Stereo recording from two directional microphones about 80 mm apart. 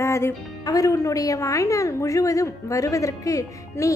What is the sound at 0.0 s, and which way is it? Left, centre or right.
Music, left.